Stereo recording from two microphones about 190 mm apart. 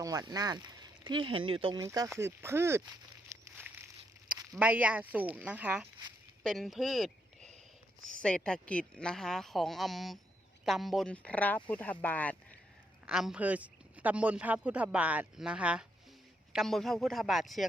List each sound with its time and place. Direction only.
0.0 s a man's voice: 20° right (ahead or behind)
3.4 s a sound: 10° right (ahead or behind)
4.4 s a man's voice: 10° right (ahead or behind)
8.2 s speech: 5° left (ahead or behind)
13.1 s a man's voice: 5° right (ahead or behind)